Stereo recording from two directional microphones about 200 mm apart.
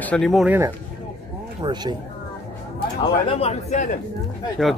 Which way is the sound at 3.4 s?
35° left (ahead or behind).